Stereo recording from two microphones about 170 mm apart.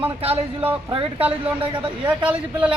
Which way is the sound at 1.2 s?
10° right (ahead or behind).